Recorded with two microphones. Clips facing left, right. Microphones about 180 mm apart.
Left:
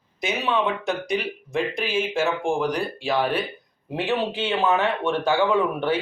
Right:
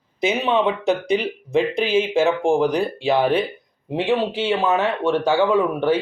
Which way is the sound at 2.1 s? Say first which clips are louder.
Right 6 dB; 20° right (ahead or behind).